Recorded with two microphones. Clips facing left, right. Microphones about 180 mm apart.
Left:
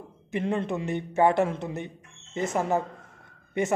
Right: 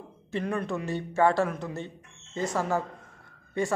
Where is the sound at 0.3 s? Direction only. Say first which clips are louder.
Left 2 dB; 20° left (ahead or behind).